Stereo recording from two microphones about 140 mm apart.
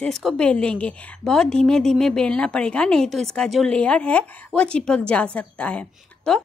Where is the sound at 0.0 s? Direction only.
Centre (ahead or behind).